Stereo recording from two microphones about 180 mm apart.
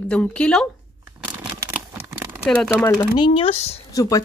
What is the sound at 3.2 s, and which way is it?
Speech, 30° left (ahead or behind).